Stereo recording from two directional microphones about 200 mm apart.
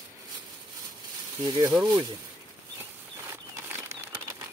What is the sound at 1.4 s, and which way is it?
Speech, 20° right (ahead or behind).